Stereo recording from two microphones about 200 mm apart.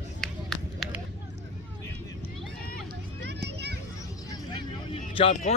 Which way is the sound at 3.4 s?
55° right (ahead or behind).